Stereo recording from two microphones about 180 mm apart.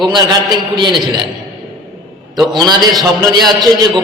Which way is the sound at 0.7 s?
25° right (ahead or behind).